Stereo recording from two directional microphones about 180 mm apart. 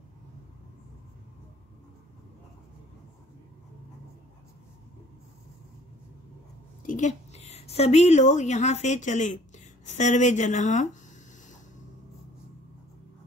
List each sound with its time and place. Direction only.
6.9 s a woman's voice: 40° left (ahead or behind)